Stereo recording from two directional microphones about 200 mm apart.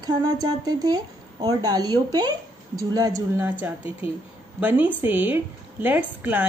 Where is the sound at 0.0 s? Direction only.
20° right (ahead or behind).